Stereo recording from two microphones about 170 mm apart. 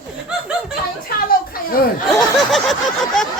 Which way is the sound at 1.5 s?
60° left (ahead or behind).